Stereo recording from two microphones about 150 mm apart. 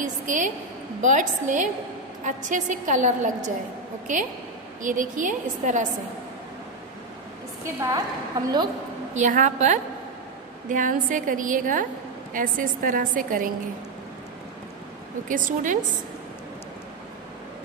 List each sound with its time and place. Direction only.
0.0 s a woman's voice: 60° right (ahead or behind)
4.8 s a woman's voice: 60° right (ahead or behind)
7.6 s a woman's voice: 20° right (ahead or behind)
9.1 s a woman's voice: 55° right (ahead or behind)
15.2 s a woman's voice: 60° right (ahead or behind)